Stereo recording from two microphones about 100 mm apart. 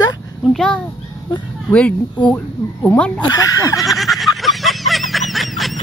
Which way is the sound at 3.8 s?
Centre (ahead or behind).